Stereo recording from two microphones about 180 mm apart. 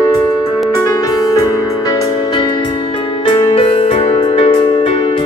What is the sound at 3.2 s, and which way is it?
Music, 30° left (ahead or behind).